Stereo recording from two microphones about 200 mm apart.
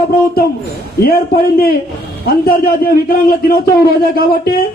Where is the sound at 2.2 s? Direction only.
50° left (ahead or behind).